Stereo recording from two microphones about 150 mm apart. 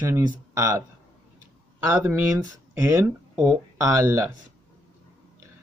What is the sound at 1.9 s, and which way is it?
Speech, 15° right (ahead or behind).